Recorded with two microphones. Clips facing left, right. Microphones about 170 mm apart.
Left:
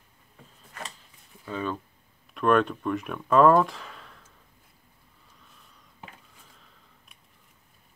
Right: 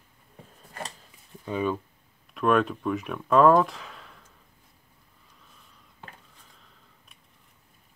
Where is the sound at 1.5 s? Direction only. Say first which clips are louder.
Right 4 dB; 10° right (ahead or behind).